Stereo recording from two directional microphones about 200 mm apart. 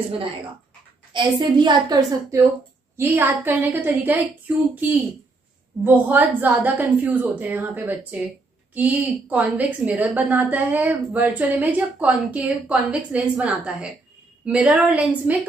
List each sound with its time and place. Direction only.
1.1 s a woman's voice: 20° right (ahead or behind)
5.9 s a woman's voice: 10° right (ahead or behind)